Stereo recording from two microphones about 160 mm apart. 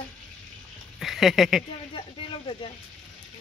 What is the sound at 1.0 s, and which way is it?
Speech, centre (ahead or behind).